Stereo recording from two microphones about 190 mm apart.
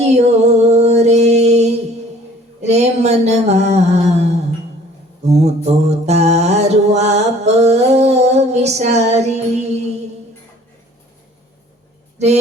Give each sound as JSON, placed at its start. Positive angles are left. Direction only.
{"t": 0.0, "sound": "music", "side_deg": -35}
{"t": 2.6, "sound": "a sound", "side_deg": -35}
{"t": 5.2, "sound": "mantra", "side_deg": -35}